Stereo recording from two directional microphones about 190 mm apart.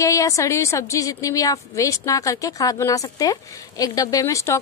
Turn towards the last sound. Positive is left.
turn(degrees=15)  # may be behind; listen again after turning